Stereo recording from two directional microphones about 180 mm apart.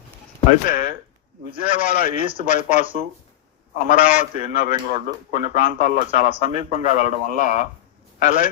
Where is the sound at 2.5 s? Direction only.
40° left (ahead or behind).